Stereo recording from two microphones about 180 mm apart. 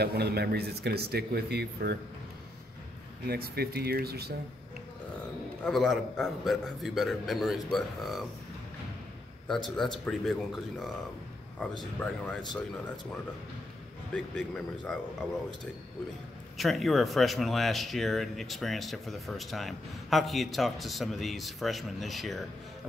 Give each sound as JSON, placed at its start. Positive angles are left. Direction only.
{"t": 0.0, "sound": "speech", "side_deg": -60}
{"t": 3.3, "sound": "speech", "side_deg": -60}
{"t": 5.7, "sound": "speech", "side_deg": 0}
{"t": 9.8, "sound": "speech", "side_deg": 0}
{"t": 14.1, "sound": "speech", "side_deg": 5}
{"t": 16.5, "sound": "speech", "side_deg": 0}